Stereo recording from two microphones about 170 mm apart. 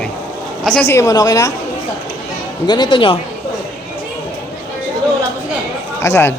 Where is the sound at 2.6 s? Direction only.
25° left (ahead or behind).